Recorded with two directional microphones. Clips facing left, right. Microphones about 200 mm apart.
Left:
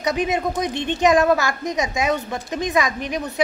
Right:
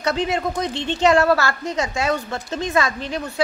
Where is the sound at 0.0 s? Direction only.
15° left (ahead or behind).